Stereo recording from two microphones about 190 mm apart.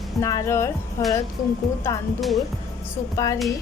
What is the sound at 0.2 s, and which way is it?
Speech, 15° left (ahead or behind).